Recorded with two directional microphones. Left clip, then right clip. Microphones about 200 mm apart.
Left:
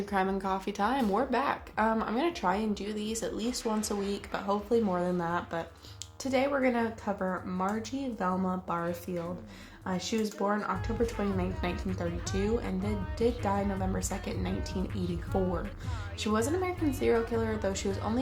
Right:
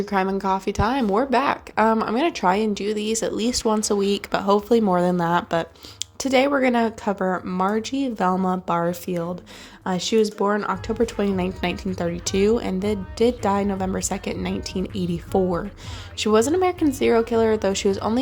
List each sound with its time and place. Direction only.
0.0 s speech: 35° right (ahead or behind)